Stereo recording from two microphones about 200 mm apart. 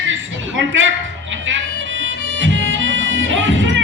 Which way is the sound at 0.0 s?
70° right (ahead or behind).